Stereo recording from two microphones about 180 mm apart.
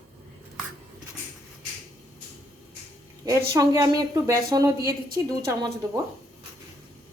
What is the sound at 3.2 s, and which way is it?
A woman's voice, 20° right (ahead or behind).